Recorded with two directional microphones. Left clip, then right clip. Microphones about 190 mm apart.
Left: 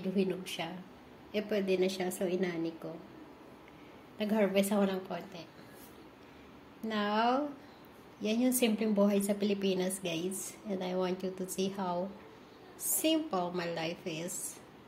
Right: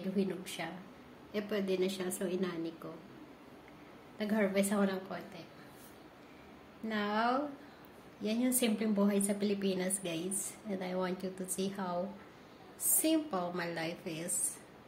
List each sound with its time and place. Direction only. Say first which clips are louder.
0.1 s a woman's voice: left 4 dB; 20° left (ahead or behind)
4.2 s a woman's voice: left 3 dB; 20° left (ahead or behind)
6.9 s a woman's voice: left 2 dB; 20° left (ahead or behind)
13.0 s a woman's voice: left 2 dB; 10° left (ahead or behind)